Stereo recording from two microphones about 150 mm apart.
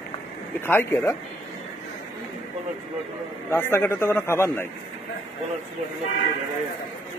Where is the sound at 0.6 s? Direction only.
15° left (ahead or behind).